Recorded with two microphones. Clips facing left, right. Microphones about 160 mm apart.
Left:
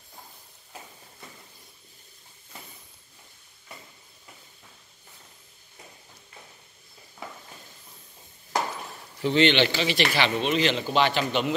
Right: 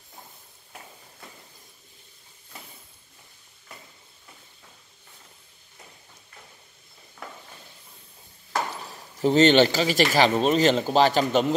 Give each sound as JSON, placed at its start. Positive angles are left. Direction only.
{"t": 8.8, "sound": "speech", "side_deg": -40}